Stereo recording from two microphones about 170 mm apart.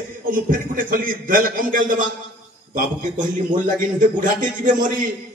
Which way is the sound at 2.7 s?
50° right (ahead or behind).